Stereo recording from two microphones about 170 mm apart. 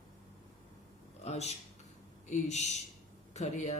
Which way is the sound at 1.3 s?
40° left (ahead or behind).